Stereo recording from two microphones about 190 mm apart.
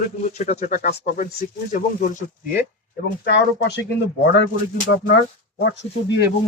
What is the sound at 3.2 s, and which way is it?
Speech, 65° left (ahead or behind).